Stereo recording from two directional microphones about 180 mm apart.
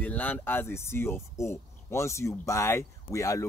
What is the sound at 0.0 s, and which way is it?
Speech, 10° left (ahead or behind).